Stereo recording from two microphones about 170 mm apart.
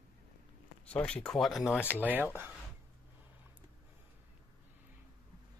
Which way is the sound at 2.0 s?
10° right (ahead or behind).